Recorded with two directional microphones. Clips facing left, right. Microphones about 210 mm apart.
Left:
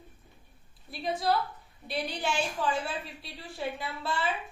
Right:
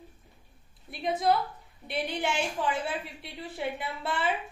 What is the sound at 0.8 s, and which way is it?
A woman's voice, 20° right (ahead or behind).